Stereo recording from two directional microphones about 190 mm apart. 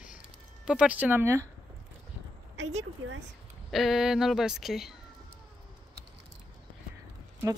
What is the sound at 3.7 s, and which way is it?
Speech, centre (ahead or behind).